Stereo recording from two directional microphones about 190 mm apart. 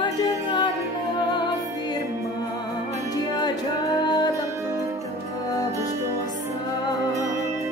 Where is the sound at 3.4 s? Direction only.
20° left (ahead or behind).